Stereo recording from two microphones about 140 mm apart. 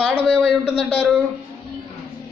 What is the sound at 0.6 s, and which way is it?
Speech, 10° left (ahead or behind).